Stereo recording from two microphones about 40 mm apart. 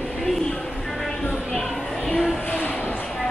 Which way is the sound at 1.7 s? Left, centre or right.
Centre.